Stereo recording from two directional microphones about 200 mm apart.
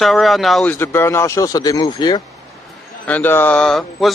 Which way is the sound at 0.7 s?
10° left (ahead or behind).